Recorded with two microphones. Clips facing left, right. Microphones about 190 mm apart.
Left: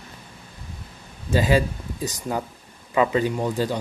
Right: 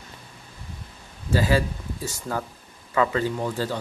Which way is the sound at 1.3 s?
20° left (ahead or behind).